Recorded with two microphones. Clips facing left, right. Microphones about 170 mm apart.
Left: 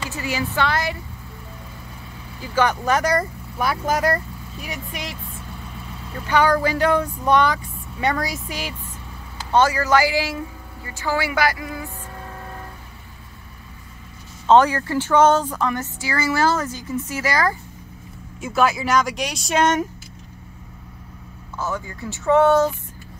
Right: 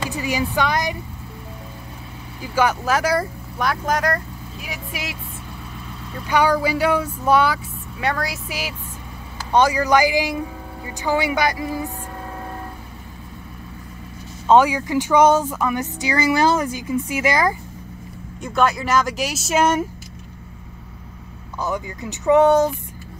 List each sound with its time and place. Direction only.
0.1 s speech: 15° right (ahead or behind)
2.5 s speech: 5° right (ahead or behind)
6.2 s speech: 10° right (ahead or behind)
14.5 s speech: 10° right (ahead or behind)
18.4 s speech: centre (ahead or behind)
21.5 s speech: 15° right (ahead or behind)